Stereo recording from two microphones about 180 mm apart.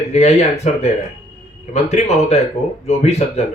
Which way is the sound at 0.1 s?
35° left (ahead or behind).